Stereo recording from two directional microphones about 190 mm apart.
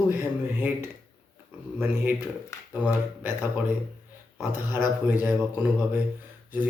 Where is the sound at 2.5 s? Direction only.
15° left (ahead or behind).